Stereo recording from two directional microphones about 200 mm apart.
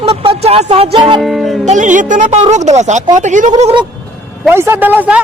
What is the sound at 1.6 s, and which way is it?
Speech, 40° right (ahead or behind).